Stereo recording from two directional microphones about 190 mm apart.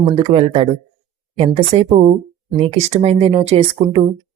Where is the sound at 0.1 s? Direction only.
35° right (ahead or behind).